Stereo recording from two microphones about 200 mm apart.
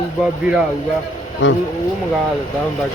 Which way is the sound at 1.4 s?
70° left (ahead or behind).